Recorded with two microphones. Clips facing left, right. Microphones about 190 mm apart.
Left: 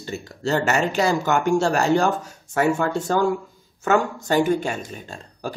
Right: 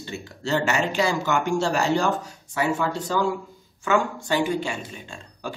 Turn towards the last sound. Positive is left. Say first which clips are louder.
# left 3 dB
turn(degrees=40)  # may be behind; listen again after turning